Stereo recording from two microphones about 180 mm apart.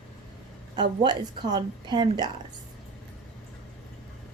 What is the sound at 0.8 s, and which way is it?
A woman's voice, 25° right (ahead or behind).